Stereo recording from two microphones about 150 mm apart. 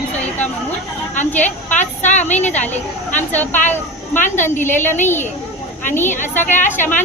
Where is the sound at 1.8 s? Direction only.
55° left (ahead or behind).